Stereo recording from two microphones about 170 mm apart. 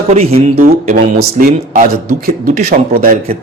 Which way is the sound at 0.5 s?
55° right (ahead or behind).